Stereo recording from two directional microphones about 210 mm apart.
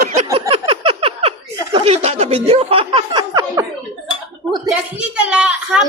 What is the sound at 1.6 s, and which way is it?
Speech, 25° right (ahead or behind).